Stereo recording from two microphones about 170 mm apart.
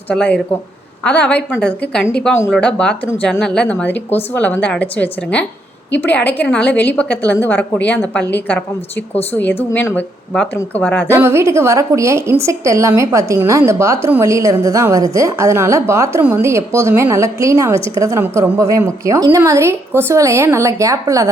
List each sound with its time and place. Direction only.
0.1 s speech: 5° left (ahead or behind)
11.1 s a woman's voice: 15° right (ahead or behind)